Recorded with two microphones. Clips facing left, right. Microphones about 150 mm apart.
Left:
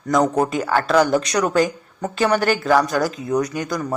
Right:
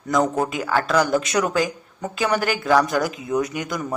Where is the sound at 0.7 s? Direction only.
20° left (ahead or behind).